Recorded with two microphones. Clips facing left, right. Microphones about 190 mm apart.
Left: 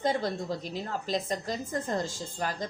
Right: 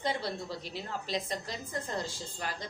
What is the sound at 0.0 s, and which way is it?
A woman's voice, 45° left (ahead or behind).